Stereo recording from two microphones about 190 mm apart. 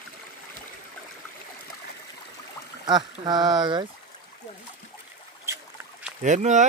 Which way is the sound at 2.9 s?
20° right (ahead or behind).